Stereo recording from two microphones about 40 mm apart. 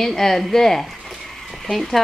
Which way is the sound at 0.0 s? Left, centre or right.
Centre.